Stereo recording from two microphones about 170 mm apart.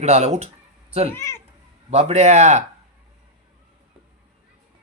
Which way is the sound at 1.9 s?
40° right (ahead or behind).